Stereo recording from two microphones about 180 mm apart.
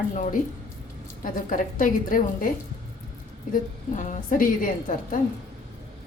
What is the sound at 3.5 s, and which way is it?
A woman's voice, 45° left (ahead or behind).